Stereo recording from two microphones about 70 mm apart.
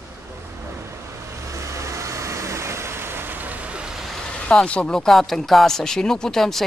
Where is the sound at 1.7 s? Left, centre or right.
Right.